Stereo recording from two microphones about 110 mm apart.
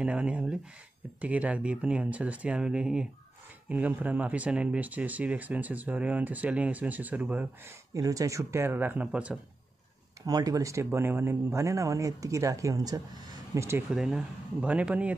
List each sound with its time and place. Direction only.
0.0 s speech: 10° right (ahead or behind)
7.9 s speech: 30° right (ahead or behind); by 9.4 s 10° right (ahead or behind)
10.2 s speech: 35° right (ahead or behind)
13.6 s speech: 25° right (ahead or behind)
13.8 s speech: 5° right (ahead or behind)